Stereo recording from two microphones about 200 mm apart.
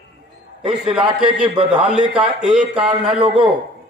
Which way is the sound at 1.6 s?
25° right (ahead or behind).